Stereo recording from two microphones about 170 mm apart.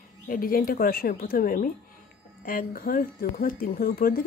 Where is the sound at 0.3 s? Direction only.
55° left (ahead or behind).